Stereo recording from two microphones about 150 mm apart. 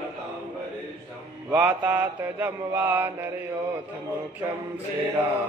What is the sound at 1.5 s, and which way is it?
Mantra, 10° right (ahead or behind).